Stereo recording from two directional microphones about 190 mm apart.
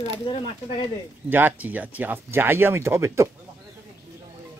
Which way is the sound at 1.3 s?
10° right (ahead or behind).